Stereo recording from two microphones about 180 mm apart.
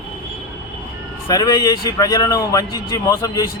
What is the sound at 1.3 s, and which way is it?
A man's voice, 20° left (ahead or behind).